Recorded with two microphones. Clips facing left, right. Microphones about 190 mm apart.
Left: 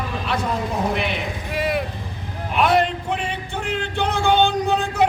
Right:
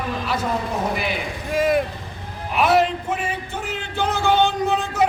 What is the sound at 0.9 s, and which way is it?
Speech, centre (ahead or behind).